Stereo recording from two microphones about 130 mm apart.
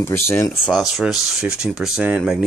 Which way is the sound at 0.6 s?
5° right (ahead or behind).